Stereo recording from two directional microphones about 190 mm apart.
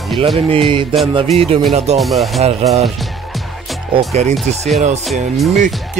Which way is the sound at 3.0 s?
Centre (ahead or behind).